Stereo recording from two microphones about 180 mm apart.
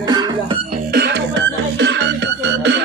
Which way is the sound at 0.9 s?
70° right (ahead or behind).